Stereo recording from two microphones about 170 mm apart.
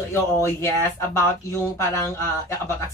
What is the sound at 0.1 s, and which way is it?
Speech, 15° left (ahead or behind).